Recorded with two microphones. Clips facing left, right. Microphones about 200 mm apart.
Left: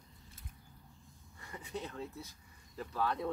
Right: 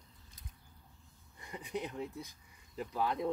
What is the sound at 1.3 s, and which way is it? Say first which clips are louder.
Speech: right 3 dB; 15° right (ahead or behind).